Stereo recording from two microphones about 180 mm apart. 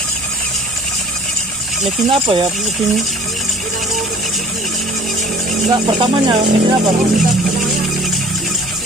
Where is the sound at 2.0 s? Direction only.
30° right (ahead or behind).